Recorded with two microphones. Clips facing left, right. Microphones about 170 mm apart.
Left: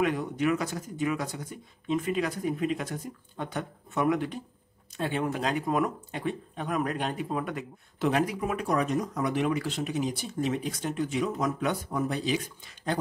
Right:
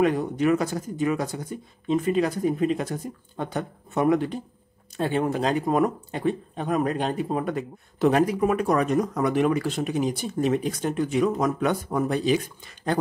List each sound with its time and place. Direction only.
0.0 s speech: 35° right (ahead or behind); by 13.0 s 50° right (ahead or behind)